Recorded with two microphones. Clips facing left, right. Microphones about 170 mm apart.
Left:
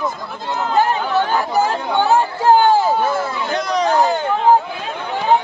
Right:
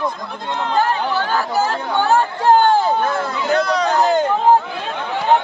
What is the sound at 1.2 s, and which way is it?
Chatter, 20° left (ahead or behind).